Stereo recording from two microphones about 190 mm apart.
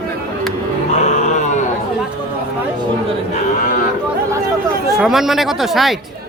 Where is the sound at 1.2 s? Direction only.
40° left (ahead or behind).